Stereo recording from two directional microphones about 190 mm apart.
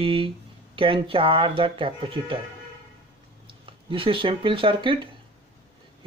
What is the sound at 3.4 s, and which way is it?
Speech, 30° right (ahead or behind).